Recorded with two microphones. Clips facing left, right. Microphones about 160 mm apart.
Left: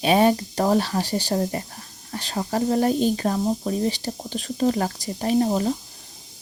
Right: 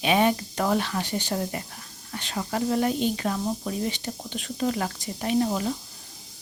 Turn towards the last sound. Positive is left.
turn(degrees=35)  # may be behind; listen again after turning